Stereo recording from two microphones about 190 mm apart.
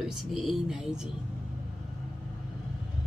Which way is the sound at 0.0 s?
Centre (ahead or behind).